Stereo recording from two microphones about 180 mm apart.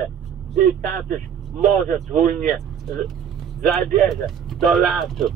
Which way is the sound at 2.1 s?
50° right (ahead or behind).